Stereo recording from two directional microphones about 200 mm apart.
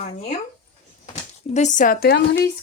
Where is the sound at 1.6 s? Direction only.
40° left (ahead or behind).